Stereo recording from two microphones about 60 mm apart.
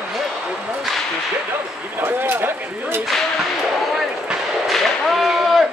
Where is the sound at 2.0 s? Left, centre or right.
Right.